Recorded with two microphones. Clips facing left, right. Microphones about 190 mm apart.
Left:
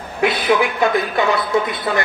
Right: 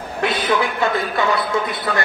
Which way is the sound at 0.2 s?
10° left (ahead or behind).